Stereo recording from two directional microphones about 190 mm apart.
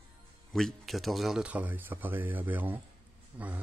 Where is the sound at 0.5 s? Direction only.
Centre (ahead or behind).